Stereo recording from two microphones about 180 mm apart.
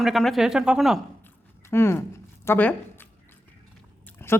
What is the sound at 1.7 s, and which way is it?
Speech, 15° left (ahead or behind).